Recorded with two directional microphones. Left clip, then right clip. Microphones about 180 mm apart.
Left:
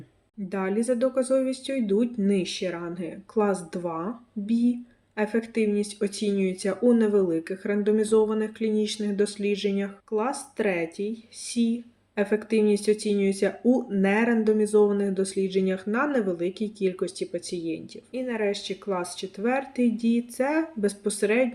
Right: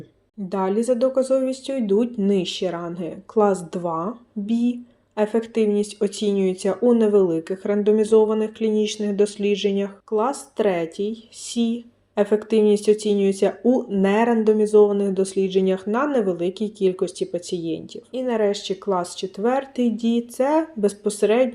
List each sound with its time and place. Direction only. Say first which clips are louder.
0.4 s speech: right 5 dB; 20° right (ahead or behind)